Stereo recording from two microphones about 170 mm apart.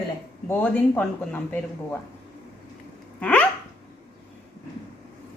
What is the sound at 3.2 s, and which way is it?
Speech, 10° left (ahead or behind).